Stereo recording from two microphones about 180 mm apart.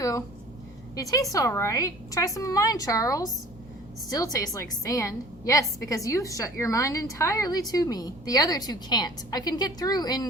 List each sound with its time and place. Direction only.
0.0 s a woman's voice: 15° left (ahead or behind)